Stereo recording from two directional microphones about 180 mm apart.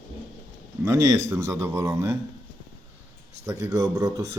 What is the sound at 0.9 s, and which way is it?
Speech, 15° right (ahead or behind).